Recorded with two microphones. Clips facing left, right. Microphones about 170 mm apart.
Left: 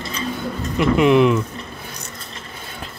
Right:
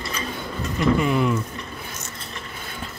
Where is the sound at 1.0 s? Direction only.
75° left (ahead or behind).